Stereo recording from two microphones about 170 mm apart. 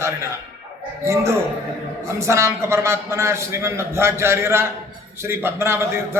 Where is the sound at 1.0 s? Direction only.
15° right (ahead or behind).